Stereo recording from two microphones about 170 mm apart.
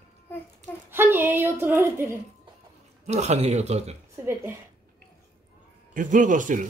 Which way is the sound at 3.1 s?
40° right (ahead or behind).